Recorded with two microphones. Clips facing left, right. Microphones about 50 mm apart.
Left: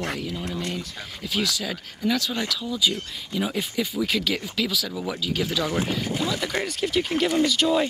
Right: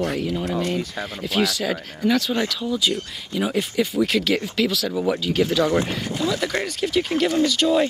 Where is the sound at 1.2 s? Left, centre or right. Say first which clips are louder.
Right 5 dB; centre.